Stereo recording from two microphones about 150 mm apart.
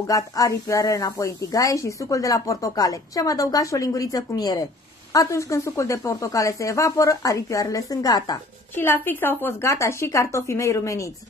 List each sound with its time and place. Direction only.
0.0 s a woman's voice: 20° left (ahead or behind)
8.7 s a woman's voice: 15° left (ahead or behind)